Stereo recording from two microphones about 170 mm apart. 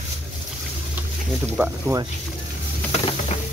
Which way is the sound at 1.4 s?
10° right (ahead or behind).